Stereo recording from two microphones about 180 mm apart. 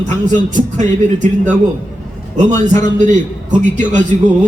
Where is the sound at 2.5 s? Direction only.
40° right (ahead or behind).